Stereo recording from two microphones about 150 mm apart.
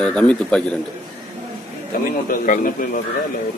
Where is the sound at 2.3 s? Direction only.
70° left (ahead or behind).